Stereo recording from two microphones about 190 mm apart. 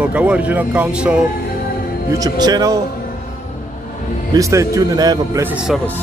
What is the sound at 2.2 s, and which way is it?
Speech, 20° right (ahead or behind).